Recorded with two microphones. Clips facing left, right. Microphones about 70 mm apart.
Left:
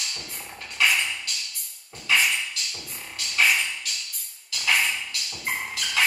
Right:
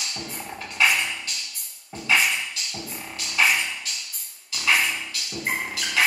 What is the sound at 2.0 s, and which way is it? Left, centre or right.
Music, right.